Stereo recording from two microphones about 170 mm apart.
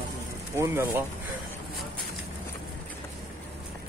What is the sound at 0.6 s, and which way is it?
Speech, 15° right (ahead or behind).